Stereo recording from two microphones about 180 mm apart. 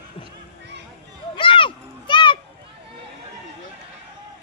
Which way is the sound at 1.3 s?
30° left (ahead or behind).